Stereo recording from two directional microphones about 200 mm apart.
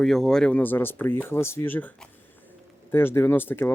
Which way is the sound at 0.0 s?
Centre (ahead or behind).